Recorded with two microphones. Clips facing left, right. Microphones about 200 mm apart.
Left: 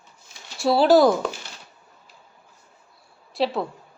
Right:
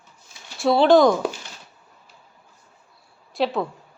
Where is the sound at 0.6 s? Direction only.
5° left (ahead or behind).